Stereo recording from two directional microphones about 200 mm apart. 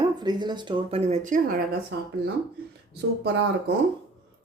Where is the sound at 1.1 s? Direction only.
40° right (ahead or behind).